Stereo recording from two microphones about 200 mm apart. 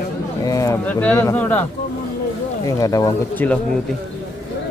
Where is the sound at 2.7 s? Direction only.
15° left (ahead or behind).